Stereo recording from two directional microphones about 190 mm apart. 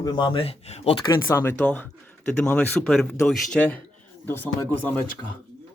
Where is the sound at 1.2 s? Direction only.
10° left (ahead or behind).